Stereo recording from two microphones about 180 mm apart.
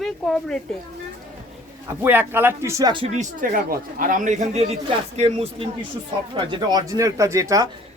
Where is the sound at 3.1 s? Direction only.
50° right (ahead or behind); by 7.6 s 15° right (ahead or behind).